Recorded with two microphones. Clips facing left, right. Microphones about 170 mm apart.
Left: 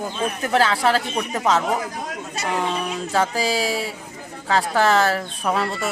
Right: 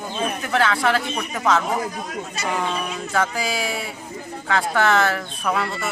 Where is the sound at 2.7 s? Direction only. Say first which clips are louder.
Left 2 dB; 30° left (ahead or behind).